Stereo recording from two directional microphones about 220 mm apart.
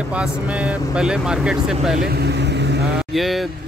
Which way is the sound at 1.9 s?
45° right (ahead or behind).